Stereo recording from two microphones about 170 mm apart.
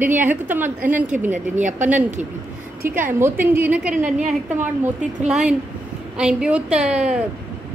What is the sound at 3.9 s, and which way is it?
Speech, 50° right (ahead or behind).